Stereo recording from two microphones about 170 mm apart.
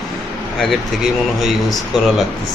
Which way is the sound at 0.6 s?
Centre (ahead or behind).